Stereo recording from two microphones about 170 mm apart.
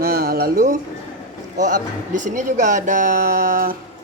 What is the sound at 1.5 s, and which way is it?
Speech, 50° right (ahead or behind).